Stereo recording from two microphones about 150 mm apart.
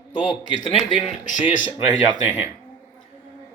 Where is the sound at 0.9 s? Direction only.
55° left (ahead or behind).